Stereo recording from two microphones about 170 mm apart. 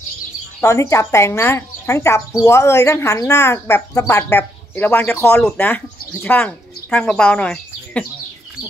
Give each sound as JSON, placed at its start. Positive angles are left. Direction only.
{"t": 0.6, "sound": "speech", "side_deg": 15}